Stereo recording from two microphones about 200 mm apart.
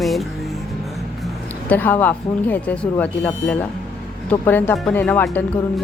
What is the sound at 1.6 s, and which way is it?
Speech, 10° left (ahead or behind).